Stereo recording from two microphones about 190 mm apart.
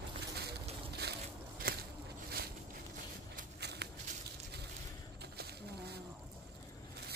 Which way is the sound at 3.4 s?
60° right (ahead or behind).